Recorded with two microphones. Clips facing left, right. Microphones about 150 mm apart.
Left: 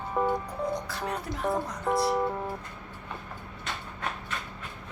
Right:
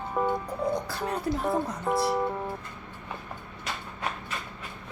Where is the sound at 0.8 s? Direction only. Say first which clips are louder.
Right 3 dB; 30° right (ahead or behind).